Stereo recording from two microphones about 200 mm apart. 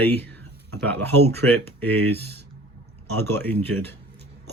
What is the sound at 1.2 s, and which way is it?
Speech, 90° right.